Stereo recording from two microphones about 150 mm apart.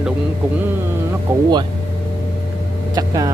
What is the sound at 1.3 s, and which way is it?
Speech, 15° right (ahead or behind).